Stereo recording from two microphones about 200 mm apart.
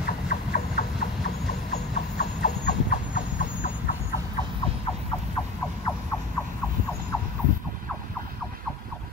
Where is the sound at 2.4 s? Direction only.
40° left (ahead or behind).